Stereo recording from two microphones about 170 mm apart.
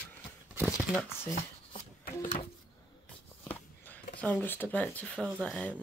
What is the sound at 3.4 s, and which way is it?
Walk, 10° left (ahead or behind).